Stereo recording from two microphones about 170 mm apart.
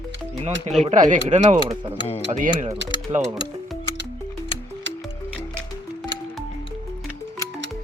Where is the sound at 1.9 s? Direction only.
35° left (ahead or behind).